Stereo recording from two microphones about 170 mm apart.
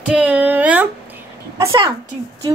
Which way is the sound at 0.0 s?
10° right (ahead or behind).